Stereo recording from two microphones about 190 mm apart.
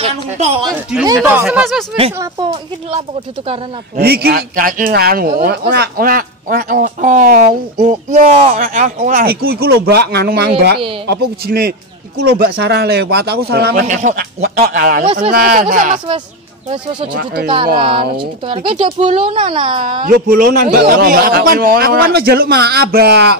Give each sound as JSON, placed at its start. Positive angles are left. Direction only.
{"t": 0.0, "sound": "speech", "side_deg": -35}
{"t": 1.0, "sound": "speech", "side_deg": -10}
{"t": 3.9, "sound": "speech", "side_deg": -55}
{"t": 13.8, "sound": "speech", "side_deg": -40}
{"t": 17.1, "sound": "speech", "side_deg": -70}
{"t": 17.7, "sound": "speech", "side_deg": -25}
{"t": 20.1, "sound": "speech", "side_deg": -50}